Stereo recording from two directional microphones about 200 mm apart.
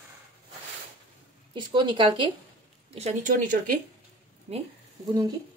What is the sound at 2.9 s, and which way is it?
Speech, 35° right (ahead or behind).